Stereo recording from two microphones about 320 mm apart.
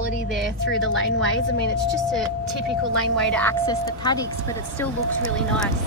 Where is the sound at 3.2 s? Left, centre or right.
Centre.